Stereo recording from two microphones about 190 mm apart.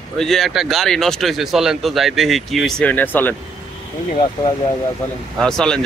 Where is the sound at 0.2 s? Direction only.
Centre (ahead or behind).